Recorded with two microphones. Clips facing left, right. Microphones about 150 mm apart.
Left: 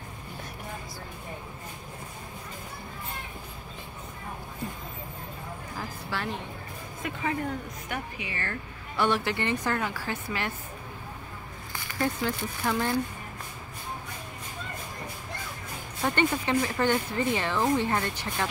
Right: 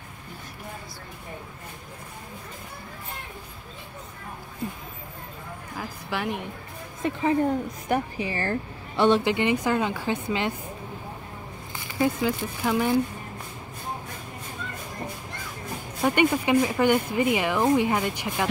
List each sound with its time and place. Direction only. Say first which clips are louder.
5.8 s a sound: right 4 dB; 15° right (ahead or behind)
7.0 s a woman's voice: right 8 dB; 30° right (ahead or behind)
12.0 s speech: right 5 dB; 10° right (ahead or behind)
16.0 s speech: right 5 dB; 10° right (ahead or behind)